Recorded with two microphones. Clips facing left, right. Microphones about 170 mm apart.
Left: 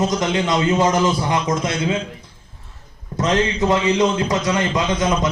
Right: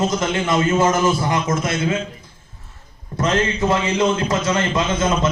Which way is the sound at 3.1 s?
15° left (ahead or behind).